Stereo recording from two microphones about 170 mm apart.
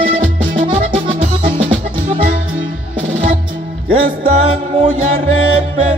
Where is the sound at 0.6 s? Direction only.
35° right (ahead or behind).